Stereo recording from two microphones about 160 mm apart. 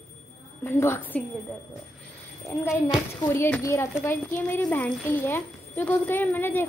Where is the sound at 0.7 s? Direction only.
15° left (ahead or behind).